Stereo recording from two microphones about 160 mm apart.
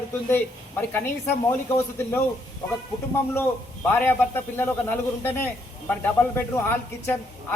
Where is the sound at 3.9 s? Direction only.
10° left (ahead or behind).